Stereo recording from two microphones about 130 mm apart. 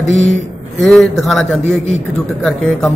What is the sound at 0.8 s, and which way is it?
Speech, 5° left (ahead or behind).